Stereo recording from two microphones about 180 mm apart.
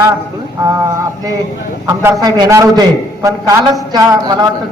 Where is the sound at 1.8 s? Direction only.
15° right (ahead or behind).